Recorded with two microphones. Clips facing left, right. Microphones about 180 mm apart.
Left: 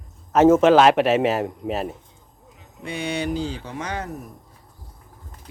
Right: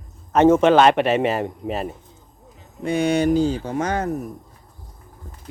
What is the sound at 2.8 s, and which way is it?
Speech, 45° right (ahead or behind).